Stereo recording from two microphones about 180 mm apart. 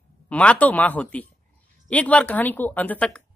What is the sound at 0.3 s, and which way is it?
Speech, 5° left (ahead or behind).